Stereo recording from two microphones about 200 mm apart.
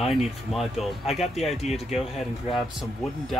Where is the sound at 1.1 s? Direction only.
30° left (ahead or behind).